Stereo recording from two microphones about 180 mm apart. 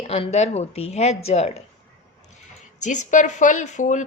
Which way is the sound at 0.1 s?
35° left (ahead or behind).